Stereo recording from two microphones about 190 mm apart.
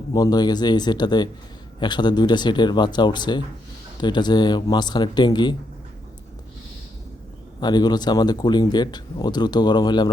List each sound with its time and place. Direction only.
0.1 s a man's voice: 20° left (ahead or behind)
7.6 s a man's voice: 20° left (ahead or behind)